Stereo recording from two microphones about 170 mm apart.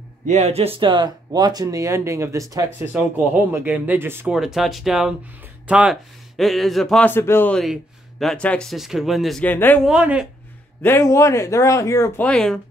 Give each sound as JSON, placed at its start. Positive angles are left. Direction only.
{"t": 0.3, "sound": "speech", "side_deg": -40}
{"t": 4.4, "sound": "speech", "side_deg": 0}
{"t": 9.8, "sound": "speech", "side_deg": -5}
{"t": 10.8, "sound": "speech", "side_deg": 15}
{"t": 12.3, "sound": "speech", "side_deg": 5}